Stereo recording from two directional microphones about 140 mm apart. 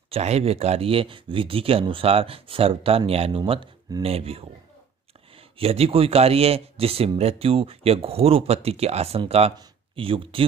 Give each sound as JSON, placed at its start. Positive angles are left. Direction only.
{"t": 0.1, "sound": "speech", "side_deg": -50}